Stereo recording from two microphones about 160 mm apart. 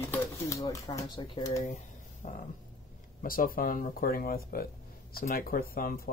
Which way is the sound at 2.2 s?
75° left (ahead or behind).